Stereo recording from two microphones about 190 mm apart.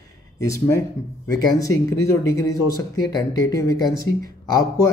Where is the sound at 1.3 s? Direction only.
15° left (ahead or behind).